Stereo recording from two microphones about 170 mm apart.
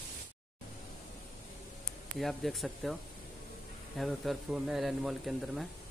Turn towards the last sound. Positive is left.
turn(degrees=0)  # may be behind; listen again after turning